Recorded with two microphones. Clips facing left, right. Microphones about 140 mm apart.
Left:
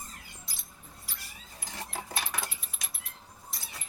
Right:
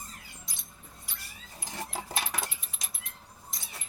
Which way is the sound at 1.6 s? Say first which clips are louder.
Right 2 dB; centre (ahead or behind).